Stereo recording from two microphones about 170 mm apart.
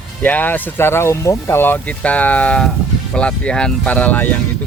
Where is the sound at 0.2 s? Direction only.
10° left (ahead or behind).